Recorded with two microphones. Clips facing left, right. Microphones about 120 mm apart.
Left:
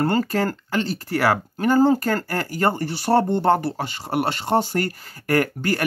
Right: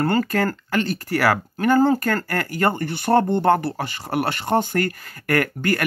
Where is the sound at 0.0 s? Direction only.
25° left (ahead or behind).